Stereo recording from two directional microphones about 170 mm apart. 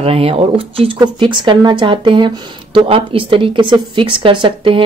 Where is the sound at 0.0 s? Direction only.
35° right (ahead or behind).